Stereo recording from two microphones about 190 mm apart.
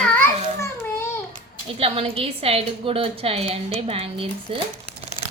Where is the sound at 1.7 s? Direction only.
30° right (ahead or behind).